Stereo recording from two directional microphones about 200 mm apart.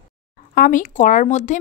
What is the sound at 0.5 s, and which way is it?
Speech, 40° left (ahead or behind).